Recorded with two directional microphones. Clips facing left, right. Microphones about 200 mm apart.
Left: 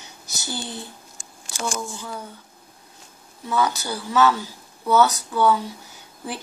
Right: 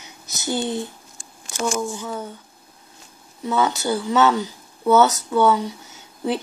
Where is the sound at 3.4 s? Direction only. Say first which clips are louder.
Right 3 dB; 20° right (ahead or behind).